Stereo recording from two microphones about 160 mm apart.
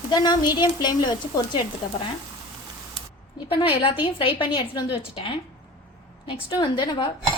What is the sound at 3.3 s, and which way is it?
A woman's voice, 35° left (ahead or behind).